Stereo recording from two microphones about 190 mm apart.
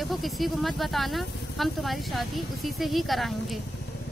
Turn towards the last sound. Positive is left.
turn(degrees=0)  # may be behind; listen again after turning